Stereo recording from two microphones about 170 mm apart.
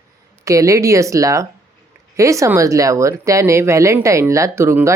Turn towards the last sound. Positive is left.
turn(degrees=-15)  # may be behind; listen again after turning